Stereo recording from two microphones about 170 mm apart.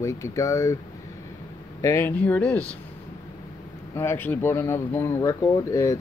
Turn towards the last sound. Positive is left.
turn(degrees=20)  # may be behind; listen again after turning